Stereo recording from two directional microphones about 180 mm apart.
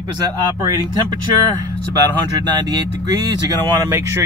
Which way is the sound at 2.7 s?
20° right (ahead or behind).